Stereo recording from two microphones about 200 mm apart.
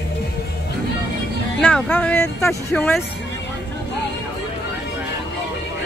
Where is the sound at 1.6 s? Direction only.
5° left (ahead or behind).